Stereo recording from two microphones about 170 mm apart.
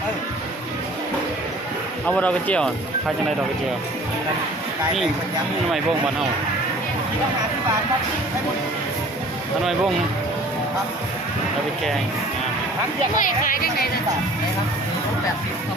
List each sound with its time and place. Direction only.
2.0 s speech: 5° left (ahead or behind)
13.1 s speech: 55° left (ahead or behind)